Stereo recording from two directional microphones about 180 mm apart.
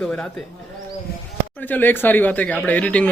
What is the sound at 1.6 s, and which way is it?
Speech, 10° left (ahead or behind).